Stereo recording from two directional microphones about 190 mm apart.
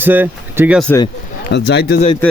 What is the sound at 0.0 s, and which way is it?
Speech, 10° right (ahead or behind).